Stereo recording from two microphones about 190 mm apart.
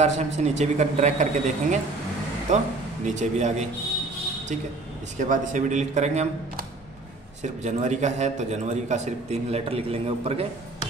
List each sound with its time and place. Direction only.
0.0 s a man's voice: 35° right (ahead or behind)
5.1 s a man's voice: 40° right (ahead or behind)
7.4 s a man's voice: 40° right (ahead or behind)